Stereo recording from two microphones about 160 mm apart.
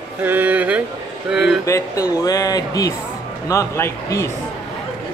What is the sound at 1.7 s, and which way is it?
Speech, 20° left (ahead or behind).